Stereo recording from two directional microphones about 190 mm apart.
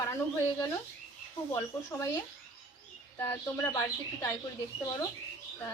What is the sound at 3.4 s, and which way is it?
Speech, 15° left (ahead or behind).